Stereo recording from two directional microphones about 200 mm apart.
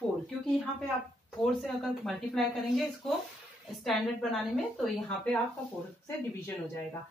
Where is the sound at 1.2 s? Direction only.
Centre (ahead or behind).